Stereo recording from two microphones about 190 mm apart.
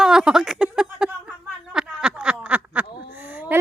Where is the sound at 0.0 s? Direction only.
5° right (ahead or behind).